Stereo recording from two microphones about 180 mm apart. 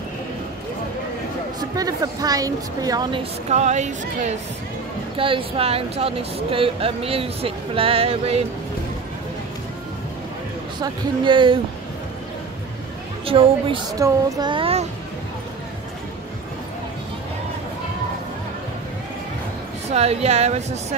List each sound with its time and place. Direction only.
1.6 s a woman's voice: 20° right (ahead or behind)
3.4 s speech: 40° right (ahead or behind)
5.1 s speech: 30° right (ahead or behind)
10.8 s a woman's voice: 25° right (ahead or behind)
13.2 s speech: 30° right (ahead or behind)
13.9 s a woman's voice: 20° right (ahead or behind)
19.9 s speech: 35° right (ahead or behind)